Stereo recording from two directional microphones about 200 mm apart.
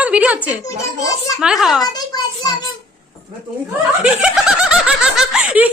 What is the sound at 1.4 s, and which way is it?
Speech, centre (ahead or behind).